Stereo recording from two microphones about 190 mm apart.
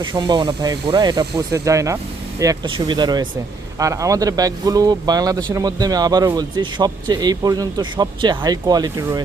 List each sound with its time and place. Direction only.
0.0 s a man's voice: 20° right (ahead or behind)